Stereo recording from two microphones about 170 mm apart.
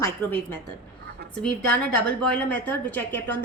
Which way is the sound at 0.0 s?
10° left (ahead or behind).